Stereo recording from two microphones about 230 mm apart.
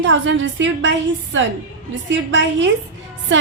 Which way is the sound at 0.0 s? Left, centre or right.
Right.